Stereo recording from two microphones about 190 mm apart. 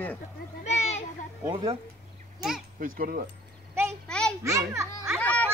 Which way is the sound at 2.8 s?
50° right (ahead or behind).